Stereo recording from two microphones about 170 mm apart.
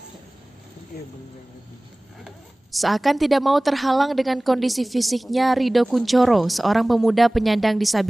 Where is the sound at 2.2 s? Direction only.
Centre (ahead or behind).